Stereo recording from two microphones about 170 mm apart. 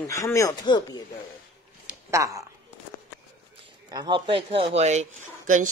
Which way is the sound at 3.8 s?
25° right (ahead or behind).